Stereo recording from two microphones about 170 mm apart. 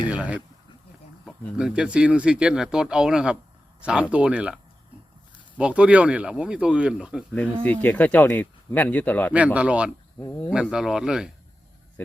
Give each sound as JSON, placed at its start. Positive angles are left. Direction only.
{"t": 0.1, "sound": "speech", "side_deg": -10}
{"t": 7.6, "sound": "speech", "side_deg": 10}
{"t": 9.3, "sound": "speech", "side_deg": -10}
{"t": 10.2, "sound": "speech", "side_deg": 15}
{"t": 10.5, "sound": "speech", "side_deg": -5}
{"t": 12.0, "sound": "speech", "side_deg": 10}